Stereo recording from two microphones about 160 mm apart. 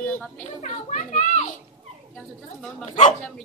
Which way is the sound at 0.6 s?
50° left (ahead or behind).